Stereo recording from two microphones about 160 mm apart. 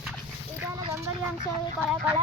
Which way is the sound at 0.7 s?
25° right (ahead or behind).